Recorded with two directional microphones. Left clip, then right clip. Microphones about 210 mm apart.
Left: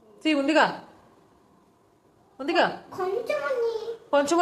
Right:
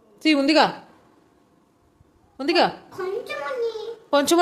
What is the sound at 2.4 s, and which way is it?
Speech, 35° right (ahead or behind).